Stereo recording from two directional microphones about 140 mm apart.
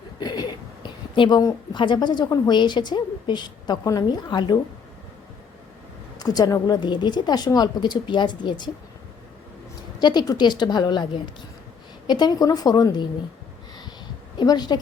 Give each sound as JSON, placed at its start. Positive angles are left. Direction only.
{"t": 0.2, "sound": "a woman's voice", "side_deg": 30}
{"t": 6.1, "sound": "a woman's voice", "side_deg": 30}
{"t": 10.0, "sound": "a woman's voice", "side_deg": 30}
{"t": 12.0, "sound": "a woman's voice", "side_deg": 30}
{"t": 14.3, "sound": "a woman's voice", "side_deg": 30}